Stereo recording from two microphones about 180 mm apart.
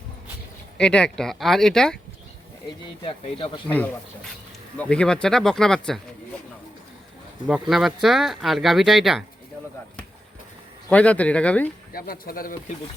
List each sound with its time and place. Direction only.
0.8 s speech: 5° left (ahead or behind)
3.0 s speech: 30° left (ahead or behind)
3.7 s speech: 10° left (ahead or behind)
7.7 s speech: centre (ahead or behind)
10.8 s speech: 5° left (ahead or behind)
11.9 s speech: 55° left (ahead or behind)